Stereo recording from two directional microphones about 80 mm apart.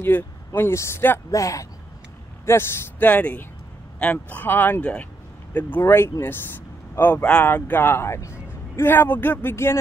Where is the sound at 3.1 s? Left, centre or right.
Left.